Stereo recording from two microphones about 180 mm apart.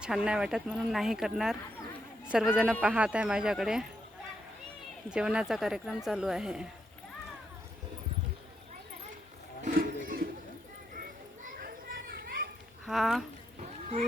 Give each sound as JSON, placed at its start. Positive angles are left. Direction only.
{"t": 0.0, "sound": "a man's voice", "side_deg": -5}
{"t": 5.0, "sound": "speech", "side_deg": -5}
{"t": 9.6, "sound": "a sound", "side_deg": -50}
{"t": 11.6, "sound": "children playing", "side_deg": -55}
{"t": 12.8, "sound": "speech", "side_deg": 0}